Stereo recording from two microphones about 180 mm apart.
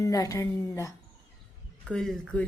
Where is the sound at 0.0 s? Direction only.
20° left (ahead or behind).